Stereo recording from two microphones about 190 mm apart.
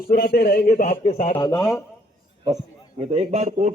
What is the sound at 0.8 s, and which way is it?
Speech, 35° left (ahead or behind).